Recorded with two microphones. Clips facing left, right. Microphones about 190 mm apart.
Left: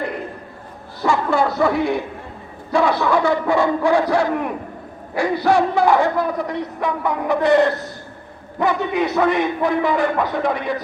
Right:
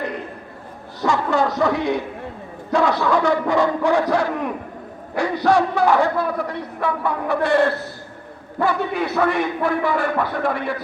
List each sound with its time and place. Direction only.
1.0 s a man's voice: 10° left (ahead or behind)